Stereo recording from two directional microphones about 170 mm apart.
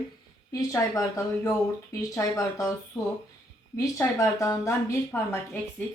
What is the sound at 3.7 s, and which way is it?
Speech, 15° left (ahead or behind).